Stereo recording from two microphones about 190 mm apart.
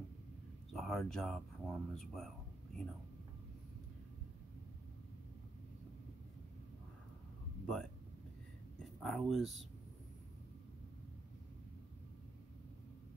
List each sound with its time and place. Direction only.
0.7 s speech: centre (ahead or behind)
9.0 s speech: centre (ahead or behind)